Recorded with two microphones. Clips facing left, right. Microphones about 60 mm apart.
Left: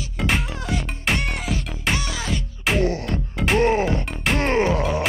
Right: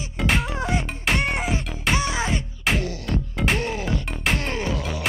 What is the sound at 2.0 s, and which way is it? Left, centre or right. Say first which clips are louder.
Music: right 3 dB; right.